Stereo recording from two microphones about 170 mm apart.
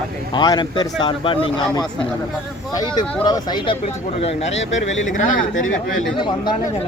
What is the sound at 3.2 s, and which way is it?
Speech, 25° left (ahead or behind).